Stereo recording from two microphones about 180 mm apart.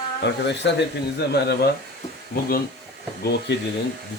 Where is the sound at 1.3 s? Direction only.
65° left (ahead or behind).